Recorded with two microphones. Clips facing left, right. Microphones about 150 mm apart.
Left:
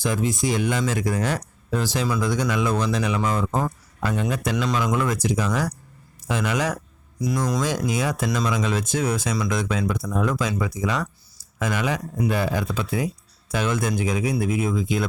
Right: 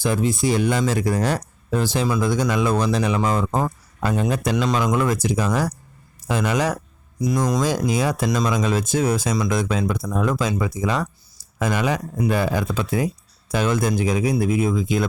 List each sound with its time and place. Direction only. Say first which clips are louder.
0.0 s speech: right 3 dB; 30° right (ahead or behind)
4.5 s speech: right 2 dB; 20° right (ahead or behind)
7.2 s speech: right 3 dB; 20° right (ahead or behind)
7.6 s speech: right 3 dB; 35° right (ahead or behind)